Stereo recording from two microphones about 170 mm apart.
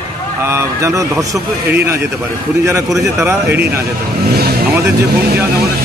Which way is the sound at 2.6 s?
15° right (ahead or behind).